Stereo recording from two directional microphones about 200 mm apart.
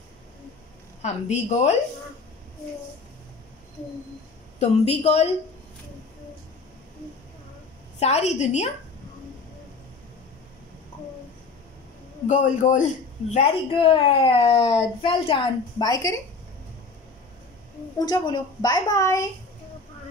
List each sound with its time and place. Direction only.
1.0 s a woman's voice: 35° left (ahead or behind)
4.6 s a woman's voice: 30° left (ahead or behind)
8.0 s a woman's voice: 35° left (ahead or behind)
12.3 s a woman's voice: 40° left (ahead or behind)
13.3 s speech: 30° left (ahead or behind)
17.9 s speech: 20° left (ahead or behind)